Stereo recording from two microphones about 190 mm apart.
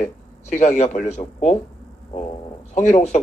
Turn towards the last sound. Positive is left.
turn(degrees=40)  # may be behind; listen again after turning